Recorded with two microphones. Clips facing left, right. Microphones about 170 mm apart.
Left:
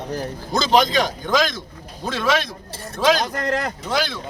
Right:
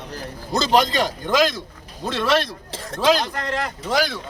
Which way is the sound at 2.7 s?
90° right.